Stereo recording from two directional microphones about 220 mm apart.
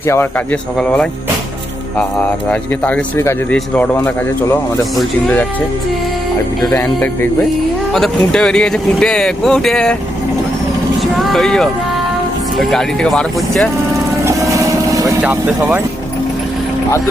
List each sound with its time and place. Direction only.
0.0 s speech: 10° left (ahead or behind)
6.6 s speech: 5° left (ahead or behind)
11.2 s speech: centre (ahead or behind)
14.3 s vehicle: 15° right (ahead or behind)